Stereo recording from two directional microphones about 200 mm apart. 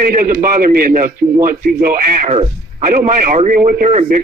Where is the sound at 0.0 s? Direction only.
45° right (ahead or behind).